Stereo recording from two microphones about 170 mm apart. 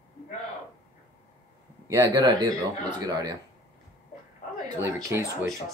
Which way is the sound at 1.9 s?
20° right (ahead or behind).